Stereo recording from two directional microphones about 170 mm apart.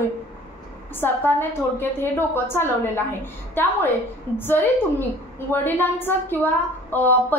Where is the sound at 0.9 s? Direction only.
15° left (ahead or behind).